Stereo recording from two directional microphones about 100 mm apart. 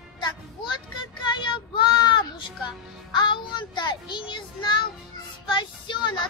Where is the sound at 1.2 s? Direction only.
50° left (ahead or behind).